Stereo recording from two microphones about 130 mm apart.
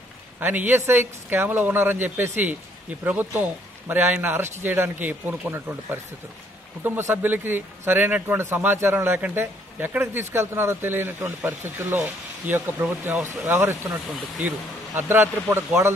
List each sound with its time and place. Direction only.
0.4 s speech: 15° right (ahead or behind)
15.0 s speech: 15° right (ahead or behind)